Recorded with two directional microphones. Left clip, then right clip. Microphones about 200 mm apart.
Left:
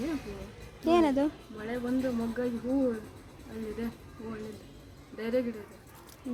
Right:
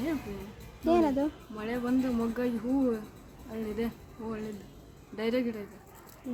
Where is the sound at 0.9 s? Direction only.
5° left (ahead or behind).